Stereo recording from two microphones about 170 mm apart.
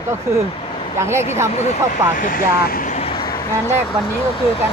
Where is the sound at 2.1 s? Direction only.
55° left (ahead or behind).